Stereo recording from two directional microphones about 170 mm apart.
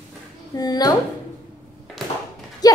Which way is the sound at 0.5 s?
25° left (ahead or behind).